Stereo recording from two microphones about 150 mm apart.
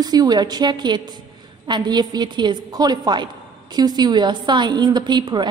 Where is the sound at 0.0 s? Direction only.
25° right (ahead or behind).